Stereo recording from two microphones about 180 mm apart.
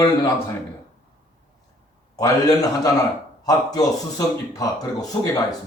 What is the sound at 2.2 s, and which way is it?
Speech, 20° left (ahead or behind).